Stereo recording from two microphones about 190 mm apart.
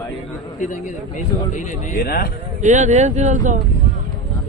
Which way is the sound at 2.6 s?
40° right (ahead or behind).